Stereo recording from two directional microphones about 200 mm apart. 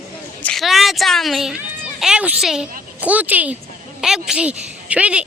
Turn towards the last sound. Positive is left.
turn(degrees=-5)  # may be behind; listen again after turning